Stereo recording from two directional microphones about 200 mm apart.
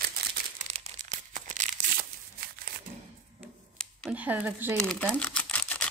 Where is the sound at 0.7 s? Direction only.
35° right (ahead or behind).